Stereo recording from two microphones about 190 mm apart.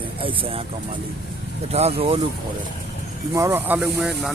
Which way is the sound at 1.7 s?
30° right (ahead or behind).